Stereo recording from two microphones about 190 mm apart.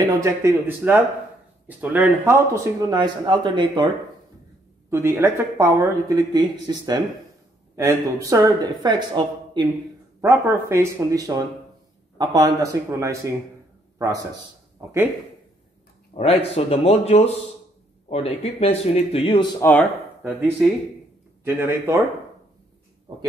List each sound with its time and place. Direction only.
0.0 s speech: 15° right (ahead or behind)
4.8 s a man's voice: 15° right (ahead or behind)
16.2 s speech: 30° left (ahead or behind)
19.6 s speech: 10° left (ahead or behind)
20.2 s speech: 10° right (ahead or behind)